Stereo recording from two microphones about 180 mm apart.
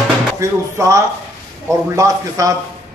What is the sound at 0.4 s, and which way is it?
A man's voice, 15° right (ahead or behind).